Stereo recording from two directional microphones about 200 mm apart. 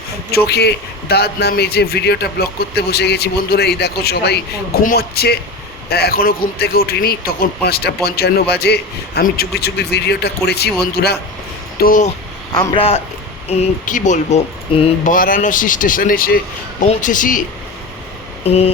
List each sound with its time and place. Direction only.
0.3 s a man's voice: 55° left (ahead or behind)
11.8 s speech: 40° left (ahead or behind)
12.5 s a man's voice: 20° left (ahead or behind); by 17.4 s 40° left (ahead or behind)
18.4 s speech: 30° left (ahead or behind)